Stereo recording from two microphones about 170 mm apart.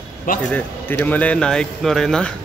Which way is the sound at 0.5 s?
10° left (ahead or behind).